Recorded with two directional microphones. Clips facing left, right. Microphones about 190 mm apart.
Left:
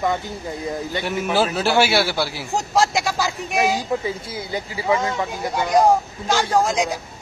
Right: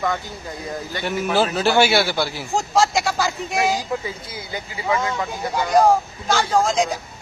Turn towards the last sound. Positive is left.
turn(degrees=10)  # may be behind; listen again after turning